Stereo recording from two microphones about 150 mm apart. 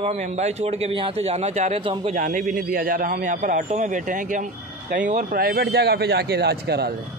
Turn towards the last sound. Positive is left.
turn(degrees=-90)